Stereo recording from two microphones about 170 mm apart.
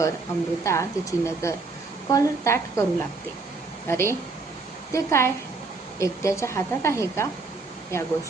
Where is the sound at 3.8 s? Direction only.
15° left (ahead or behind).